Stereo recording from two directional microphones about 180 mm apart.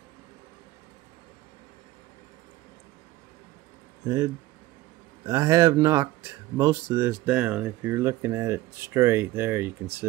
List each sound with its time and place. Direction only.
4.0 s speech: 20° right (ahead or behind)